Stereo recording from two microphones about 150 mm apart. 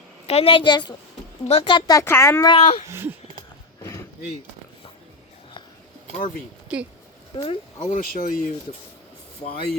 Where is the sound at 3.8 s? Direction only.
20° left (ahead or behind).